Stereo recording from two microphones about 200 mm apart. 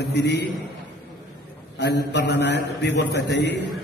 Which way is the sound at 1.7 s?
60° left (ahead or behind).